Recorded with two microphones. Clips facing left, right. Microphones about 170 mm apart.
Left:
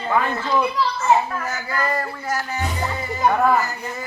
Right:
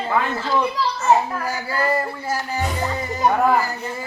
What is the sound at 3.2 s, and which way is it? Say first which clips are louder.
Speech: even; 15° right (ahead or behind).